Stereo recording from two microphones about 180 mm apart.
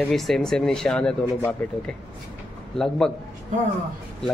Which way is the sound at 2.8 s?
5° left (ahead or behind).